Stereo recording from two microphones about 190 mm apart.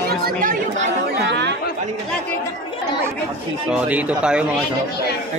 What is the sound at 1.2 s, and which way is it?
Chatter, 65° right (ahead or behind).